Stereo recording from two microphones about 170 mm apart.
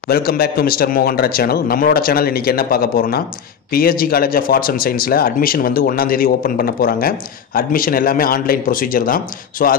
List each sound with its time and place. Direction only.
0.1 s speech: 65° left (ahead or behind)